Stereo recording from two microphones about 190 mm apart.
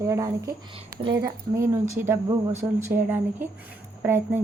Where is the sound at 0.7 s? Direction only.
25° right (ahead or behind).